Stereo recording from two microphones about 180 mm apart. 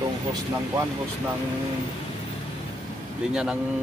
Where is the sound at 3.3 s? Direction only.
5° right (ahead or behind).